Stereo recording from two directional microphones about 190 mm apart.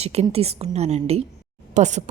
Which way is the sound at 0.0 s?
35° right (ahead or behind).